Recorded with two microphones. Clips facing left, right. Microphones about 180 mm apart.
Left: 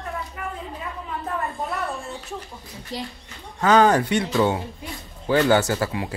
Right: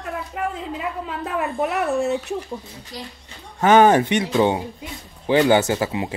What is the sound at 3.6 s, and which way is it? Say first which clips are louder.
Speech: right 3 dB; 20° right (ahead or behind).